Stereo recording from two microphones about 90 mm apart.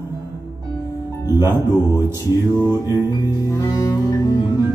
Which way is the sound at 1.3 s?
30° right (ahead or behind).